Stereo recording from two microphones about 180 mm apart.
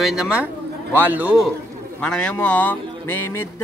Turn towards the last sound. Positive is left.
turn(degrees=10)  # may be behind; listen again after turning